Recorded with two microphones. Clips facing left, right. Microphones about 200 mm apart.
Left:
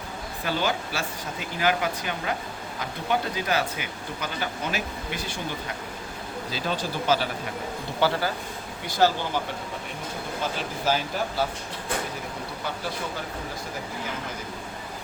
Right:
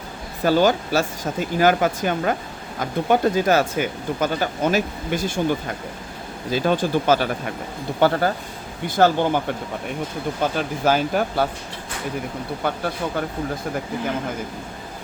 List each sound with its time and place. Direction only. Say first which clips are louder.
0.4 s speech: right 10 dB; 45° right (ahead or behind)
6.5 s speech: right 11 dB; 50° right (ahead or behind)
10.4 s speech: right 7 dB; 55° right (ahead or behind)
12.6 s speech: right 9 dB; 55° right (ahead or behind)